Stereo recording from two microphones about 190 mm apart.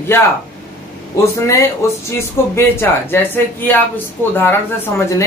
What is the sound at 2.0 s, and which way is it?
Speech, 15° left (ahead or behind).